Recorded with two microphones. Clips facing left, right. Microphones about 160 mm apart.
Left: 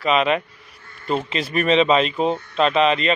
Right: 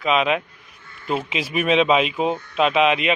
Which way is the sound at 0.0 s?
Centre (ahead or behind).